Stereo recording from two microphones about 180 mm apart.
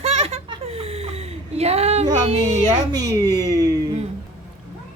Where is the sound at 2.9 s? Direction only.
20° right (ahead or behind).